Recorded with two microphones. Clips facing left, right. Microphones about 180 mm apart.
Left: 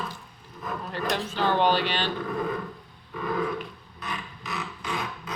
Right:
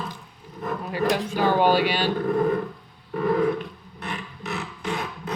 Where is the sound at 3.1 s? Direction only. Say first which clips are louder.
Right 8 dB; 40° right (ahead or behind).